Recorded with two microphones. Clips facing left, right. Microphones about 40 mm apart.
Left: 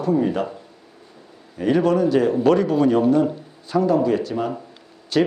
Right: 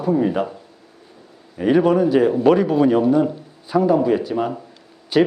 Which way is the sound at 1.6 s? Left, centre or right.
Centre.